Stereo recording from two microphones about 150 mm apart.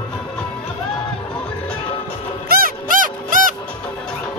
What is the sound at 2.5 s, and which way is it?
Music, 70° right (ahead or behind).